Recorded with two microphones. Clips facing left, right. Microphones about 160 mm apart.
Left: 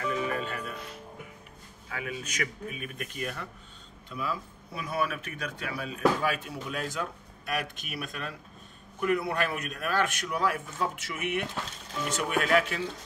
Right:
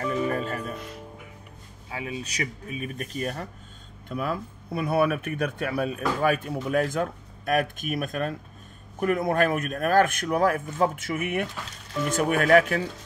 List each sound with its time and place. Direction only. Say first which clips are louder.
0.0 s music: right 4 dB; 40° right (ahead or behind)
1.9 s a man's voice: right 3 dB; 25° right (ahead or behind)
4.1 s speech: right 5 dB; 55° right (ahead or behind)